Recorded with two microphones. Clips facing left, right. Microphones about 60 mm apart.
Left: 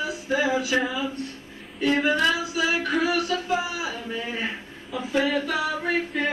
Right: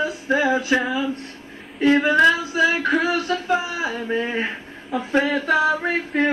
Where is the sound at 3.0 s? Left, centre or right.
Right.